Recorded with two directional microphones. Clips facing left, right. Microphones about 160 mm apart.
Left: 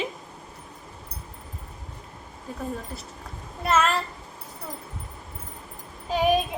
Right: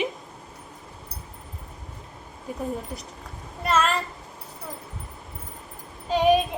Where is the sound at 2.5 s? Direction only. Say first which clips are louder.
Right 3 dB; 15° right (ahead or behind).